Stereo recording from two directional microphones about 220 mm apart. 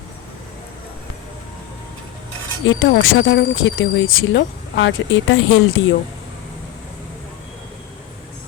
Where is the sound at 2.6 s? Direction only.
65° left (ahead or behind).